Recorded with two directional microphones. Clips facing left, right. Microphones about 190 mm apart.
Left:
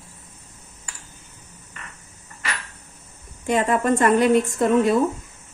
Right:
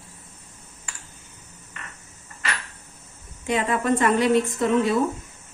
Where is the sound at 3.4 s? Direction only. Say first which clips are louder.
Left 3 dB; 45° left (ahead or behind).